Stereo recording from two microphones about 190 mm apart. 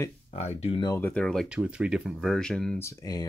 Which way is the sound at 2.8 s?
15° left (ahead or behind).